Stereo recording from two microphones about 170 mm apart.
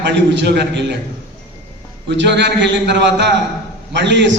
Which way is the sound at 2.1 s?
90° right.